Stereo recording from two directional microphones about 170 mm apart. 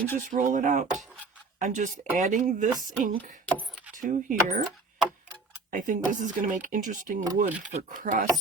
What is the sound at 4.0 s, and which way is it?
Speech, 50° right (ahead or behind).